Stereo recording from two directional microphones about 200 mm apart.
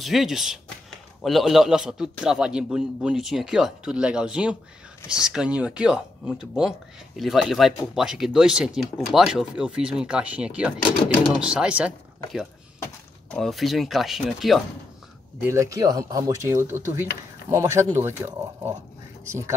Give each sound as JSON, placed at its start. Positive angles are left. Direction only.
{"t": 0.0, "sound": "a man's voice", "side_deg": 0}
{"t": 15.4, "sound": "speech", "side_deg": -15}